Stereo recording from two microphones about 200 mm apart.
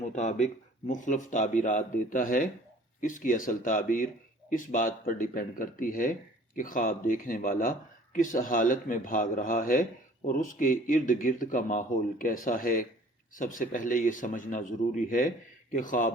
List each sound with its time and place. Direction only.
0.0 s speech: 35° left (ahead or behind)